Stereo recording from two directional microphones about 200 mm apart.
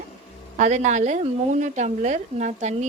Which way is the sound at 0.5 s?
35° right (ahead or behind).